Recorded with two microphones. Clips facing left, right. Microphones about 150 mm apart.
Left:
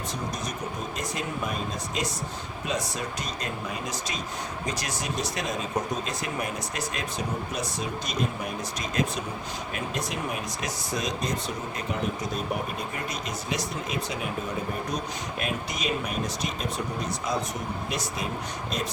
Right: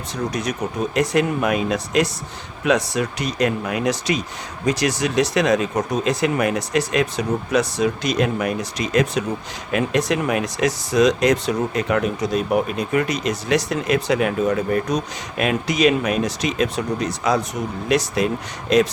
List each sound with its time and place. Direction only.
0.9 s speech: 75° right (ahead or behind)